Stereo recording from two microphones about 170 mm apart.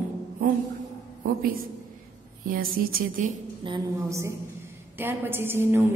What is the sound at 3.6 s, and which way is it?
Speech, 25° right (ahead or behind).